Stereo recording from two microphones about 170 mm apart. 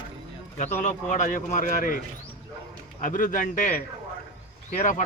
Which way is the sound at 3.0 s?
50° left (ahead or behind).